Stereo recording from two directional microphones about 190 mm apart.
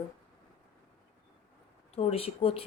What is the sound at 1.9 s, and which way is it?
Speech, 30° left (ahead or behind).